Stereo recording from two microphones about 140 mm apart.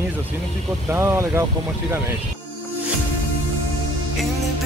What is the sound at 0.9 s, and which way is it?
Speech, 20° right (ahead or behind).